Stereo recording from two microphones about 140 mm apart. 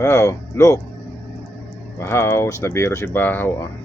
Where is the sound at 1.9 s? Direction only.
20° left (ahead or behind).